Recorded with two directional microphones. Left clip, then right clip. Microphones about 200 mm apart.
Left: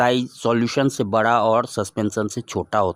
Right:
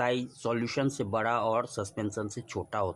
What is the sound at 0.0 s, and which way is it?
Speech, 45° left (ahead or behind).